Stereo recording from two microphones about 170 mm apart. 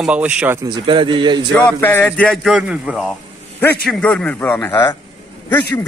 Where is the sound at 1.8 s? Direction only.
10° left (ahead or behind).